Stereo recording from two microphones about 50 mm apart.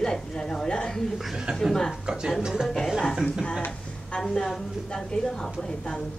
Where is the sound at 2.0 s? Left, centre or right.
Centre.